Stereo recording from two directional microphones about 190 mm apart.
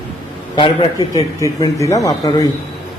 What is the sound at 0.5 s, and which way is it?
A man's voice, 25° left (ahead or behind).